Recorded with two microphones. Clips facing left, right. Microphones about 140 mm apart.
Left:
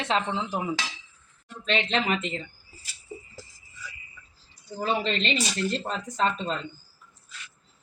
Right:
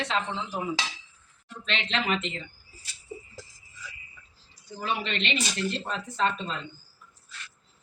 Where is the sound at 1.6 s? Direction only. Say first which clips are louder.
Left 4 dB; 45° left (ahead or behind).